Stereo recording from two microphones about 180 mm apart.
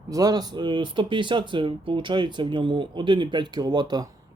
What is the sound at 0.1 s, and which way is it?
Speech, 20° right (ahead or behind).